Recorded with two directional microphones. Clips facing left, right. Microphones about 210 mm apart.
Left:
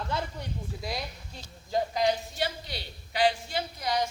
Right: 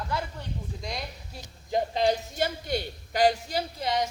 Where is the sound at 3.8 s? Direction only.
20° right (ahead or behind).